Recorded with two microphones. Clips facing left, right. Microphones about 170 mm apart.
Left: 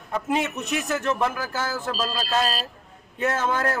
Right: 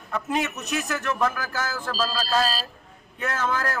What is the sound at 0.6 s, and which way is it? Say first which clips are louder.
A man's voice: left 2 dB; 25° left (ahead or behind).